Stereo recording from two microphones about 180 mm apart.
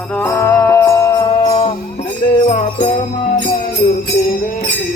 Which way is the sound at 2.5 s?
40° left (ahead or behind).